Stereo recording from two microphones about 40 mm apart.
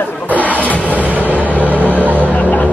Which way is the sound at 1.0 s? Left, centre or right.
Right.